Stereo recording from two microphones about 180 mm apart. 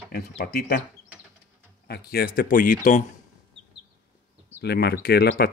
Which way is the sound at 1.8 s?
60° left (ahead or behind).